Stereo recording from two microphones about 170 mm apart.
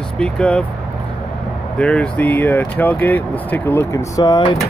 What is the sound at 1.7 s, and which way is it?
Speech, 5° left (ahead or behind).